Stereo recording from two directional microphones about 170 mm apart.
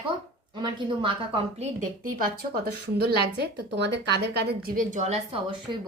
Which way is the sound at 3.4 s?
85° right.